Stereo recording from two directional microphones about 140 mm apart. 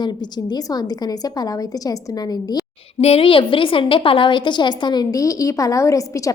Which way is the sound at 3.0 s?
45° left (ahead or behind).